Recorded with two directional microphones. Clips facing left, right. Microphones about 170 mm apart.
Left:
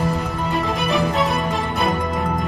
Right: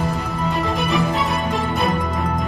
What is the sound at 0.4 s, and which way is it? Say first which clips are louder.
Music: right 1 dB; centre (ahead or behind).